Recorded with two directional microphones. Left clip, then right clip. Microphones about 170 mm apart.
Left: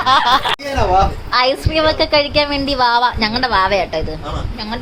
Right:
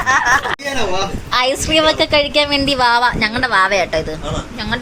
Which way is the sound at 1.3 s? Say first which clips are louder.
Even; 5° right (ahead or behind).